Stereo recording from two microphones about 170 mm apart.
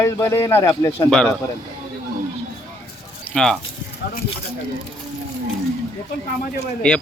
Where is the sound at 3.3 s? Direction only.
5° left (ahead or behind).